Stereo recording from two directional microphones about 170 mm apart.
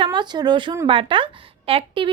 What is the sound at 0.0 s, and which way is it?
A woman's voice, 25° right (ahead or behind).